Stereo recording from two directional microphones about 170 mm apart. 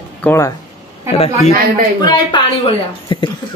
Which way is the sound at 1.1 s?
35° left (ahead or behind).